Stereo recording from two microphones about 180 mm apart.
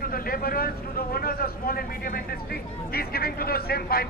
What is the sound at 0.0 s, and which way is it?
Speech, 55° left (ahead or behind).